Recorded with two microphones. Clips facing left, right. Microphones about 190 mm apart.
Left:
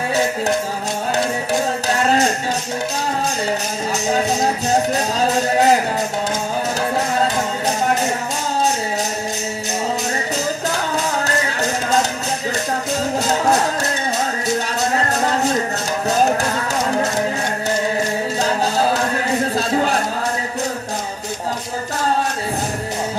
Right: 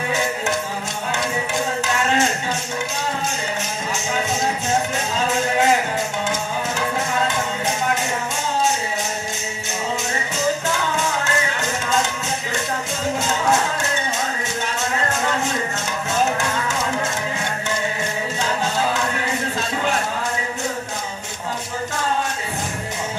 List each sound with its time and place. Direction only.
1.1 s music: 35° left (ahead or behind)
4.6 s music: 35° left (ahead or behind)
10.7 s music: 35° left (ahead or behind)
13.3 s music: 35° left (ahead or behind)
14.8 s music: 35° left (ahead or behind)
18.4 s music: 40° left (ahead or behind)
19.5 s a sound: 35° left (ahead or behind)